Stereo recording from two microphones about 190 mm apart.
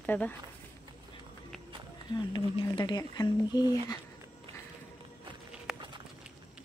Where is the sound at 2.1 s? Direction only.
25° left (ahead or behind).